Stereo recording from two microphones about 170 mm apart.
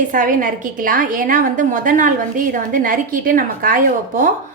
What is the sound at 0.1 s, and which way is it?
A woman's voice, 50° right (ahead or behind).